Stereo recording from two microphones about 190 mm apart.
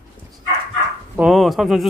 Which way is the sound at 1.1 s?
Centre (ahead or behind).